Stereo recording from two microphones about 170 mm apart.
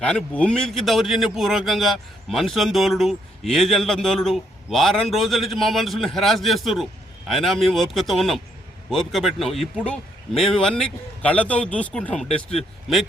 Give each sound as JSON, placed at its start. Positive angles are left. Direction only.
{"t": 0.0, "sound": "a man's voice", "side_deg": 5}